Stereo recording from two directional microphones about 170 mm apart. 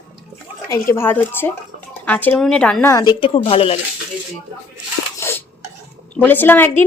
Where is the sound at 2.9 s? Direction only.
25° left (ahead or behind).